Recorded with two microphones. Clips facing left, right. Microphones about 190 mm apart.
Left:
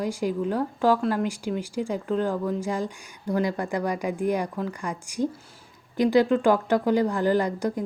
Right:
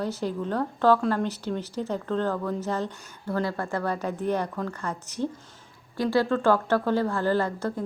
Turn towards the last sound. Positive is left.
turn(degrees=15)  # may be behind; listen again after turning